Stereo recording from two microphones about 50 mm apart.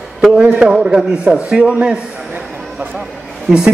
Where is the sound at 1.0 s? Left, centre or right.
Centre.